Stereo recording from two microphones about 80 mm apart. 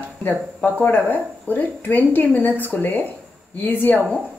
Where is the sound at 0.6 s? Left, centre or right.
Centre.